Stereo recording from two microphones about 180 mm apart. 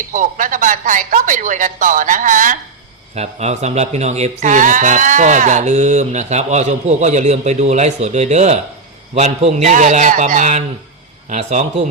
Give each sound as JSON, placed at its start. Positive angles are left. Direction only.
{"t": 0.1, "sound": "speech", "side_deg": -45}